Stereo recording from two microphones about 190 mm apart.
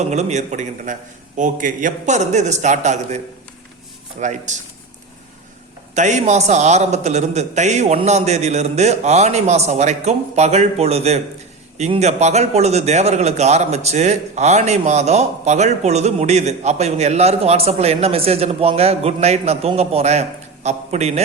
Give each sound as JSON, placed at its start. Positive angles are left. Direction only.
{"t": 0.0, "sound": "a man's voice", "side_deg": -35}
{"t": 4.2, "sound": "a man's voice", "side_deg": -40}
{"t": 5.9, "sound": "a man's voice", "side_deg": -40}